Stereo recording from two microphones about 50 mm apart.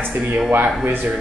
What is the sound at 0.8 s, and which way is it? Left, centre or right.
Speech, right.